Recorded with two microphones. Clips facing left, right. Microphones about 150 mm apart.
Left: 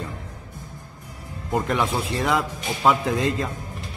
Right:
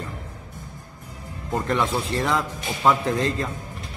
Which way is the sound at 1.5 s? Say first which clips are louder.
Even; 10° left (ahead or behind).